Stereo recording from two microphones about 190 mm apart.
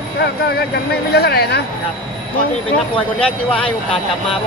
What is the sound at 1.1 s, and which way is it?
Speech, 55° left (ahead or behind).